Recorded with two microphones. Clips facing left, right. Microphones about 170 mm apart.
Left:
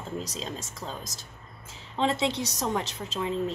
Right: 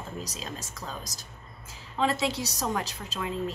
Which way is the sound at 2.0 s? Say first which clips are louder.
Left 1 dB; 25° left (ahead or behind).